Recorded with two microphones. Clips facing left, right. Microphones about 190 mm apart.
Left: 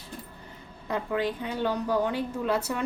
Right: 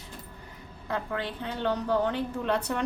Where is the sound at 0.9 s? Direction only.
15° left (ahead or behind).